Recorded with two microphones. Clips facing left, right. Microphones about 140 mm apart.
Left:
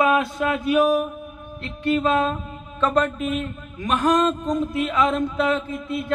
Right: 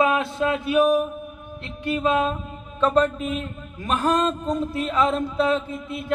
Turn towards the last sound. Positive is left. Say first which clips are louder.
# left 3 dB
turn(degrees=-10)  # may be behind; listen again after turning